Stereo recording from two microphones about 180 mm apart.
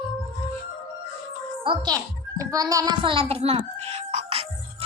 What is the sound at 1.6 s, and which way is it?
A child's voice, 25° right (ahead or behind).